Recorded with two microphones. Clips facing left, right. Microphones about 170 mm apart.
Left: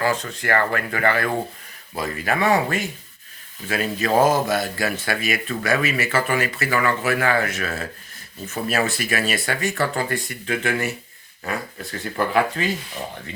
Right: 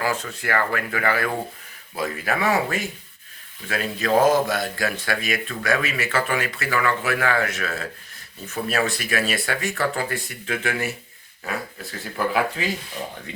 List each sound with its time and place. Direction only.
0.0 s speech: 5° right (ahead or behind)